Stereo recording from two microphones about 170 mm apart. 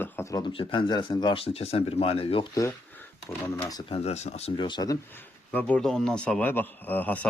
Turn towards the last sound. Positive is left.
turn(degrees=10)  # may be behind; listen again after turning